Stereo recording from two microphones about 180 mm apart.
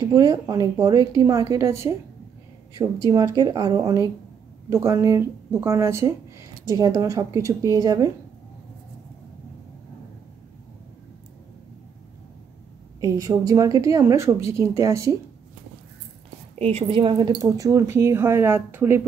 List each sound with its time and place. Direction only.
0.1 s a woman's voice: 20° right (ahead or behind)
13.0 s a woman's voice: 20° right (ahead or behind)
16.5 s a woman's voice: 35° right (ahead or behind); by 19.0 s 10° right (ahead or behind)